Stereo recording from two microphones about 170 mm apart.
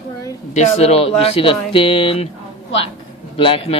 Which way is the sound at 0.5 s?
40° left (ahead or behind).